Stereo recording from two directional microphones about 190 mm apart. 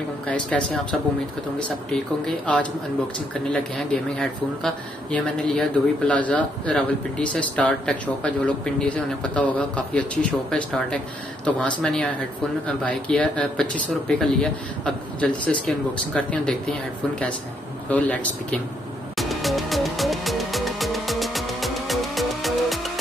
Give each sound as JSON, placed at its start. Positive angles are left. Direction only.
{"t": 0.3, "sound": "speech", "side_deg": 5}
{"t": 1.9, "sound": "speech", "side_deg": 5}
{"t": 11.4, "sound": "speech", "side_deg": 5}
{"t": 17.8, "sound": "speech", "side_deg": 5}
{"t": 19.1, "sound": "music", "side_deg": 0}